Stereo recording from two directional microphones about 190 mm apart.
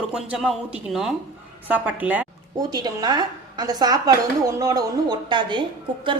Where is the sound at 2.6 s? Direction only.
20° right (ahead or behind).